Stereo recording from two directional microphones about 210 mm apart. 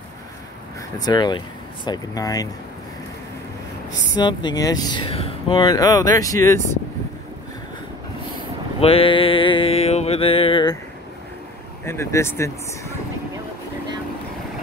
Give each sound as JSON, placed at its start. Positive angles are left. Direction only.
{"t": 0.9, "sound": "speech", "side_deg": 20}
{"t": 4.1, "sound": "speech", "side_deg": 20}
{"t": 8.8, "sound": "speech", "side_deg": 25}
{"t": 11.8, "sound": "speech", "side_deg": 10}